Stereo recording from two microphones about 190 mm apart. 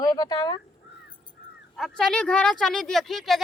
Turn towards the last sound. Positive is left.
turn(degrees=0)  # may be behind; listen again after turning